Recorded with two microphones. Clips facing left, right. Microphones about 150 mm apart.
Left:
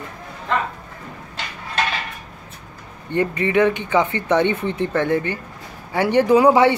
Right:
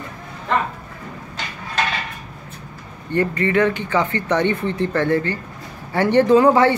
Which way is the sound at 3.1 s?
15° left (ahead or behind).